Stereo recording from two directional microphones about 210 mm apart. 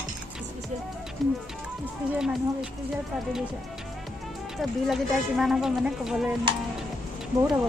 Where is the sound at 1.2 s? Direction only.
Centre (ahead or behind).